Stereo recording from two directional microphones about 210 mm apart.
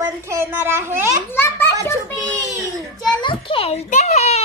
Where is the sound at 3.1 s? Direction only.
20° left (ahead or behind).